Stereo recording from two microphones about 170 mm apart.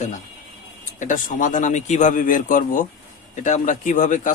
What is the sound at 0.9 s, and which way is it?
A man's voice, 50° left (ahead or behind).